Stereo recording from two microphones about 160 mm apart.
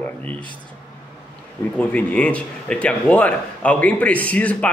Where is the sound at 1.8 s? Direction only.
10° left (ahead or behind).